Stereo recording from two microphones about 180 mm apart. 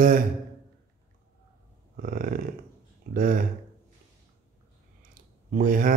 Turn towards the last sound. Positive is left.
turn(degrees=-50)  # may be behind; listen again after turning